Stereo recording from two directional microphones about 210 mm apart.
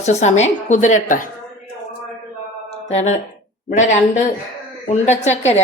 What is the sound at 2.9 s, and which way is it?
Speech, 30° left (ahead or behind).